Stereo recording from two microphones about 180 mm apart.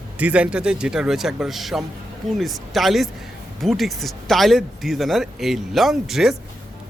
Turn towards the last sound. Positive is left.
turn(degrees=0)  # may be behind; listen again after turning